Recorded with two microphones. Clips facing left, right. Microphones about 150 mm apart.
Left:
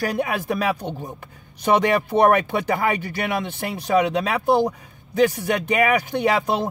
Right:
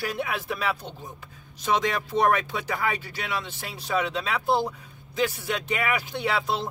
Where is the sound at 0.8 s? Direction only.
60° left (ahead or behind).